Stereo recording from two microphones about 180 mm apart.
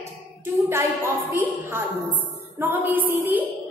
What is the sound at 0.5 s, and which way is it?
A woman's voice, 10° right (ahead or behind).